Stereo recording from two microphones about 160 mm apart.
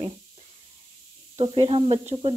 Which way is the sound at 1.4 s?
35° right (ahead or behind).